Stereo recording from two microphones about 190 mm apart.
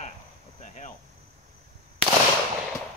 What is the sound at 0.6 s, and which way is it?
Cricket, 40° left (ahead or behind).